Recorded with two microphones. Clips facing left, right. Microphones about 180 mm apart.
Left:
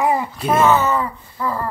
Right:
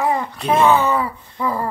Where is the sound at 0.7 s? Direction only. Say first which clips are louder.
Even; 10° right (ahead or behind).